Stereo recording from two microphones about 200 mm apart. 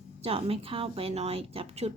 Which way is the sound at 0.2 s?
30° right (ahead or behind).